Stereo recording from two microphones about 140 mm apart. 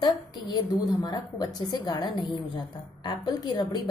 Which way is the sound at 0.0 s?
30° left (ahead or behind).